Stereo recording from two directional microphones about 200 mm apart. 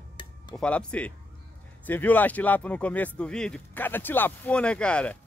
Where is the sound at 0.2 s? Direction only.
20° left (ahead or behind).